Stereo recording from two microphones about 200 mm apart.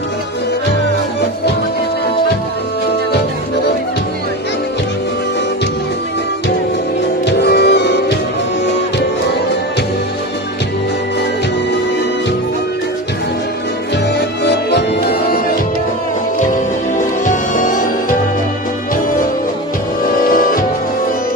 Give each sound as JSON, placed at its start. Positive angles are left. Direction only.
{"t": 7.2, "sound": "music", "side_deg": 55}
{"t": 14.1, "sound": "music", "side_deg": 55}
{"t": 17.2, "sound": "music", "side_deg": 40}
{"t": 20.2, "sound": "music", "side_deg": 45}